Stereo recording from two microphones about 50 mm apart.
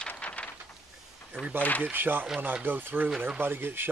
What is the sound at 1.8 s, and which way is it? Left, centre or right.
Speech, right.